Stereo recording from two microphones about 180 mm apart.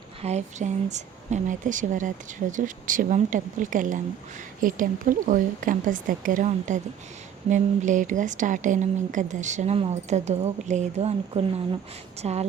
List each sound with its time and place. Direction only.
0.2 s a woman's voice: 40° right (ahead or behind)